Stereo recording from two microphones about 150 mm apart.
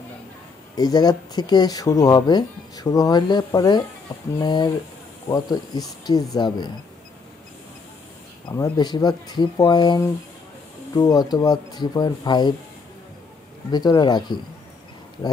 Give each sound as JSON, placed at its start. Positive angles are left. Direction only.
{"t": 0.7, "sound": "speech", "side_deg": 25}
{"t": 8.5, "sound": "speech", "side_deg": 25}
{"t": 13.7, "sound": "speech", "side_deg": 25}